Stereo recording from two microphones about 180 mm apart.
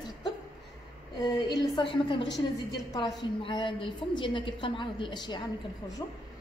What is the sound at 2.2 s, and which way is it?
Speech, 75° left (ahead or behind).